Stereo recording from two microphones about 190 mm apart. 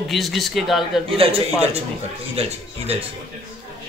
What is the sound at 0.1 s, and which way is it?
Speech, centre (ahead or behind).